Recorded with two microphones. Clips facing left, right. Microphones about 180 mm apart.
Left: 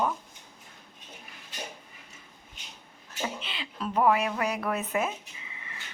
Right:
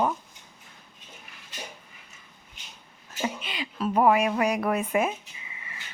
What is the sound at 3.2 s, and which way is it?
Speech, 15° right (ahead or behind).